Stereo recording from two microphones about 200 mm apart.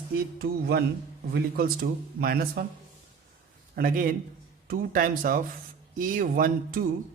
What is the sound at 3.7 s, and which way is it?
Speech, 45° right (ahead or behind).